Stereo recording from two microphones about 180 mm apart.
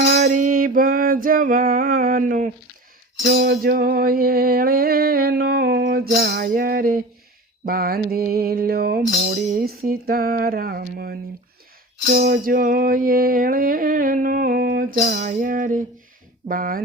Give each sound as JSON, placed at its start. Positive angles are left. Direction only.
{"t": 0.0, "sound": "a sound", "side_deg": -60}
{"t": 3.3, "sound": "music", "side_deg": -60}
{"t": 6.1, "sound": "music", "side_deg": -55}